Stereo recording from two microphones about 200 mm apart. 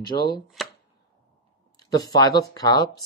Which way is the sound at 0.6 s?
Centre (ahead or behind).